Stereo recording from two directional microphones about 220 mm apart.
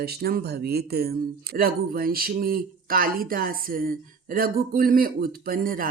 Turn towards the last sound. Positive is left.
turn(degrees=-40)  # may be behind; listen again after turning